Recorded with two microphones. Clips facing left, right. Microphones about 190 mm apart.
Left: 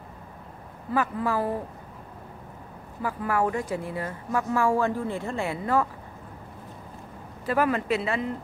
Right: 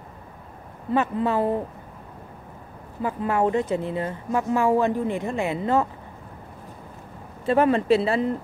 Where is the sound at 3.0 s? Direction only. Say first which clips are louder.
Right 3 dB; 25° right (ahead or behind).